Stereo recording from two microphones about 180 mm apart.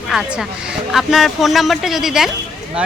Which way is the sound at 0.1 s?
Centre (ahead or behind).